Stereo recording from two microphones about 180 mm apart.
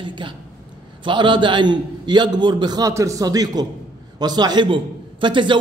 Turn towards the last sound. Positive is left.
turn(degrees=-25)  # may be behind; listen again after turning